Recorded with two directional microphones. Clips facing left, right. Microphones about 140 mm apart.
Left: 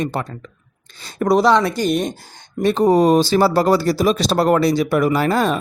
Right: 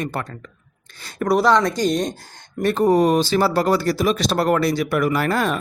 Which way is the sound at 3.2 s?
35° left (ahead or behind).